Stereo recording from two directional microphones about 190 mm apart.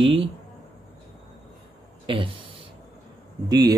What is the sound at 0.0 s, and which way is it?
Speech, 30° right (ahead or behind).